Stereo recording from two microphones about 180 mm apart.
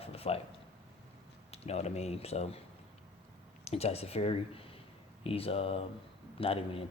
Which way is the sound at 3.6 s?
35° left (ahead or behind).